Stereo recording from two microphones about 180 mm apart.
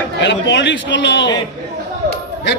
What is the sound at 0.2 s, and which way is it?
A man's voice, 80° left.